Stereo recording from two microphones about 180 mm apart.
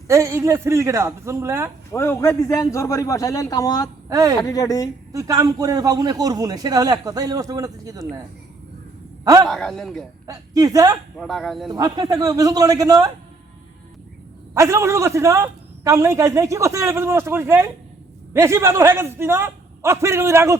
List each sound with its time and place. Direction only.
0.1 s a woman's voice: 15° right (ahead or behind)
1.9 s a man's voice: 15° left (ahead or behind)
4.1 s a man's voice: 20° right (ahead or behind)
4.4 s a woman's voice: 20° left (ahead or behind)
5.1 s a man's voice: 20° right (ahead or behind)
9.2 s a man's voice: 20° right (ahead or behind)
9.5 s a man's voice: centre (ahead or behind)
10.2 s a man's voice: 20° right (ahead or behind)
11.2 s a man's voice: centre (ahead or behind)
11.7 s a man's voice: 20° right (ahead or behind)
14.5 s a woman's voice: 15° right (ahead or behind)